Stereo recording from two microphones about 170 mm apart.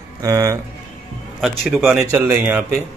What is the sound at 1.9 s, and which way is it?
Speech, 15° right (ahead or behind).